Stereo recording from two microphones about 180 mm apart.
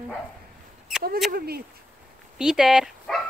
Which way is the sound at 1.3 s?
55° right (ahead or behind).